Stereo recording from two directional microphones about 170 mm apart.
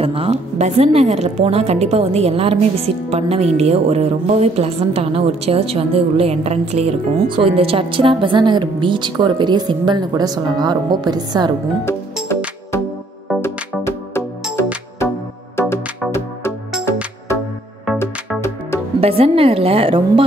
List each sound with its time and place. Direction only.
0.0 s a woman's voice: 35° right (ahead or behind)
13.4 s music: 15° left (ahead or behind)
15.6 s music: 15° left (ahead or behind)
18.9 s a woman's voice: 35° right (ahead or behind)